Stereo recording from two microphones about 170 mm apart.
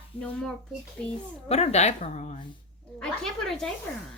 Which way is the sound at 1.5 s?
35° left (ahead or behind).